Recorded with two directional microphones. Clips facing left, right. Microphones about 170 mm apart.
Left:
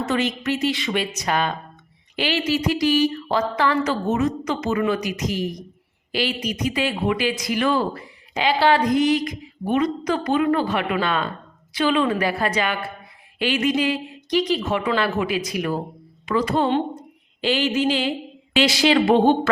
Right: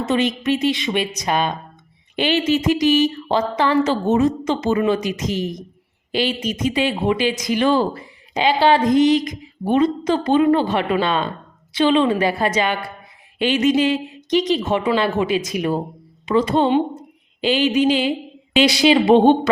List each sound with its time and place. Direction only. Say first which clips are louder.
0.0 s a woman's voice: right 3 dB; 20° right (ahead or behind)
16.6 s speech: right 4 dB; 10° right (ahead or behind)